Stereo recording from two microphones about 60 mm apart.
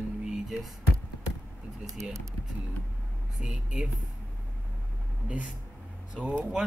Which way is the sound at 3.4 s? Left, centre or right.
Centre.